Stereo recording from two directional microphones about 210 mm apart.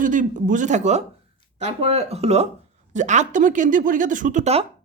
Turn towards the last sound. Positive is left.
turn(degrees=-30)  # may be behind; listen again after turning